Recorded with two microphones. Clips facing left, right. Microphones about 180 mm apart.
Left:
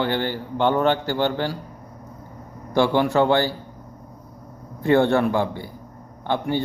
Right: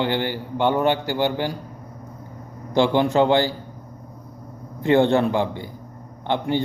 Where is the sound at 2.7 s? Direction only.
20° right (ahead or behind).